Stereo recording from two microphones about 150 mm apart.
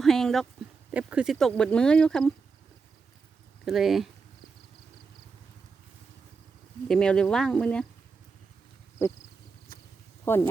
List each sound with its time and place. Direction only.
0.0 s a sound: 5° left (ahead or behind)
0.9 s speech: 5° right (ahead or behind)
3.7 s speech: centre (ahead or behind)
6.8 s speech: 5° left (ahead or behind)
10.2 s speech: 15° left (ahead or behind)